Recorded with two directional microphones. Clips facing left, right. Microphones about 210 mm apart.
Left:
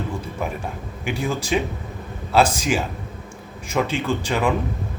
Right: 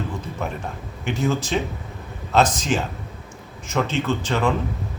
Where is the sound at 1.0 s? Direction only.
10° left (ahead or behind).